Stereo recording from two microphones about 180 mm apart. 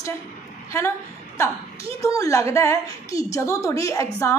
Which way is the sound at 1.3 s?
15° left (ahead or behind).